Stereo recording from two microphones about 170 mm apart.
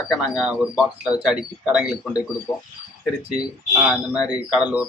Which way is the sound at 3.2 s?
5° right (ahead or behind).